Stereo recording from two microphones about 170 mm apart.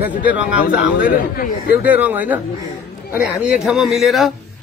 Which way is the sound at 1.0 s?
60° left (ahead or behind).